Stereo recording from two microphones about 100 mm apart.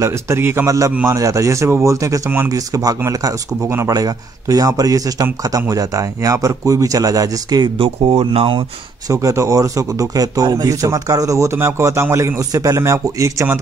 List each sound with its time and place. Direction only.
0.0 s a man's voice: 25° right (ahead or behind)
7.8 s speech: 70° right (ahead or behind)
9.1 s speech: 30° right (ahead or behind)
12.4 s speech: 35° right (ahead or behind)